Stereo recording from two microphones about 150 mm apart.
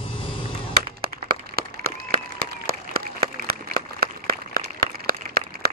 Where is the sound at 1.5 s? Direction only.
85° right.